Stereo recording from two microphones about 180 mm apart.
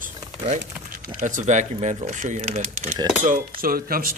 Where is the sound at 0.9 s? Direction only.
50° right (ahead or behind).